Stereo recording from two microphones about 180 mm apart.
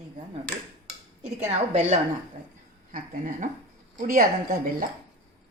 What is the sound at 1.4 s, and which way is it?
Speech, 40° right (ahead or behind).